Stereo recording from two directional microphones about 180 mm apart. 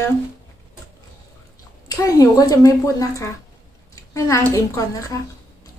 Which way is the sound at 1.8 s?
20° left (ahead or behind).